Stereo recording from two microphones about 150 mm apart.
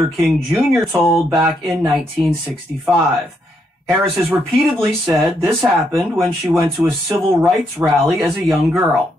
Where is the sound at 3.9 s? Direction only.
10° right (ahead or behind).